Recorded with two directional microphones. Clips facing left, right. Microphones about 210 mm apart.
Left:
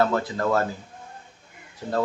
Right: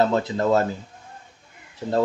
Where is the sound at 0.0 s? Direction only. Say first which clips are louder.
Right 2 dB; 20° right (ahead or behind).